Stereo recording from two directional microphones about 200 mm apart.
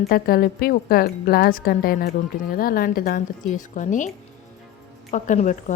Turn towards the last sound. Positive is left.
turn(degrees=35)  # may be behind; listen again after turning